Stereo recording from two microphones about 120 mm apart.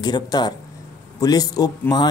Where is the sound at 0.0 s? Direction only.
35° left (ahead or behind).